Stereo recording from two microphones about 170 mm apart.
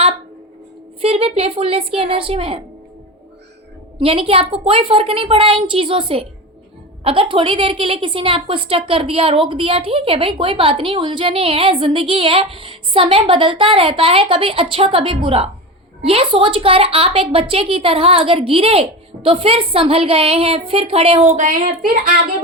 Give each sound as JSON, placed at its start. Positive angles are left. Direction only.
{"t": 1.0, "sound": "a woman's voice", "side_deg": -35}
{"t": 4.0, "sound": "a woman's voice", "side_deg": -35}